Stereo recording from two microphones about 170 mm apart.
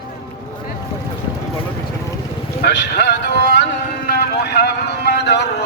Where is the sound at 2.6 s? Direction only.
75° left (ahead or behind).